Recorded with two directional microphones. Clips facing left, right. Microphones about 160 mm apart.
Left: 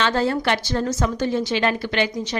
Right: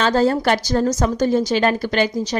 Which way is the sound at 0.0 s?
40° right (ahead or behind).